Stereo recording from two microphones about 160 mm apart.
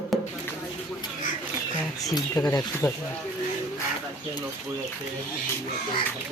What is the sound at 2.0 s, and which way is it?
Speech, 25° left (ahead or behind).